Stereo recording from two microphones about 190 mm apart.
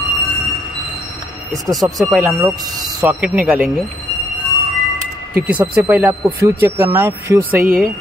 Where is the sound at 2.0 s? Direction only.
Centre (ahead or behind).